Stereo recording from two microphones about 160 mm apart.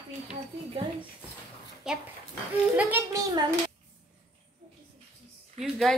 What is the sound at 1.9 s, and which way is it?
Dog, 5° right (ahead or behind).